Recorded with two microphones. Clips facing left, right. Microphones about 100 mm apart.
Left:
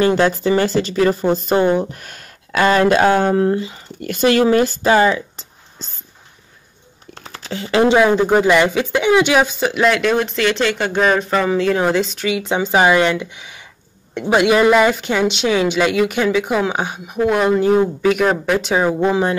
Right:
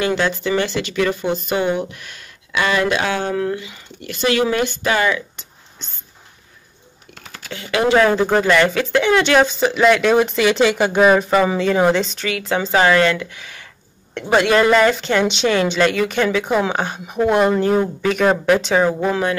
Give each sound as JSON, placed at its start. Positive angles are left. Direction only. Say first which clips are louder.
{"t": 0.0, "sound": "speech", "louder": "left 5 dB", "side_deg": 40}
{"t": 4.0, "sound": "speech", "louder": "left 4 dB", "side_deg": 45}
{"t": 7.2, "sound": "a sound", "louder": "left 5 dB", "side_deg": 30}
{"t": 8.0, "sound": "speech", "louder": "left 2 dB", "side_deg": 10}
{"t": 12.3, "sound": "a woman's voice", "louder": "left 2 dB", "side_deg": 15}